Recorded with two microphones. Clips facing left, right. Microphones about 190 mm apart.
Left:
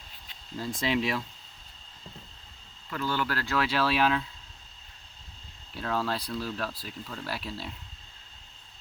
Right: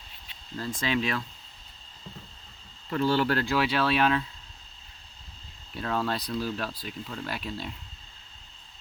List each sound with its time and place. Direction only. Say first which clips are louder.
0.5 s speech: even; 10° left (ahead or behind)
2.9 s speech: right 6 dB; 30° right (ahead or behind)
3.4 s speech: right 3 dB; 10° right (ahead or behind)
3.7 s speech: left 2 dB; centre (ahead or behind)
5.7 s speech: right 1 dB; centre (ahead or behind)